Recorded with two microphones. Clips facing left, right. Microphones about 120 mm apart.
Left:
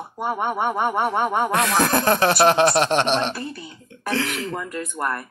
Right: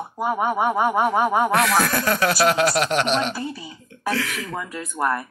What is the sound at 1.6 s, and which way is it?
Speech, 20° left (ahead or behind).